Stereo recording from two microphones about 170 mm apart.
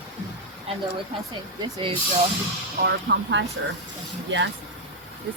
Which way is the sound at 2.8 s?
90° right.